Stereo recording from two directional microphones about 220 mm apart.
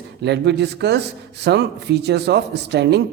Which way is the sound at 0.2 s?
50° right (ahead or behind).